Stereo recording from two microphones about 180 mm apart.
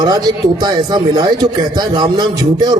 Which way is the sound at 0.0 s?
20° right (ahead or behind).